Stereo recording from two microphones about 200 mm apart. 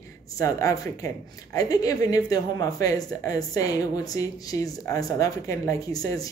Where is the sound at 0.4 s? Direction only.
15° left (ahead or behind).